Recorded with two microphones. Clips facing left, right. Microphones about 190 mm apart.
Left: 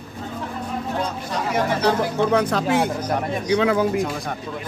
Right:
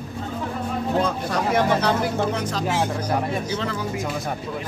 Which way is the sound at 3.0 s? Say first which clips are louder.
Even; 10° right (ahead or behind).